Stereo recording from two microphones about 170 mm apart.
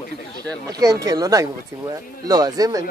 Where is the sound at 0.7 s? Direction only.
20° right (ahead or behind).